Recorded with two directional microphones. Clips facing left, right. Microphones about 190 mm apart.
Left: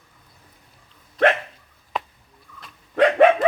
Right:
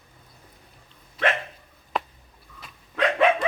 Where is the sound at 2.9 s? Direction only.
50° left (ahead or behind).